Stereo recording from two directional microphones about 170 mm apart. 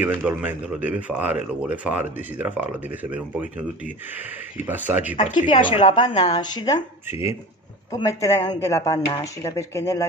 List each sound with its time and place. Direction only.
0.0 s speech: 10° right (ahead or behind)
5.1 s a woman's voice: 30° left (ahead or behind)
7.1 s speech: 15° right (ahead or behind)
8.1 s speech: 15° left (ahead or behind)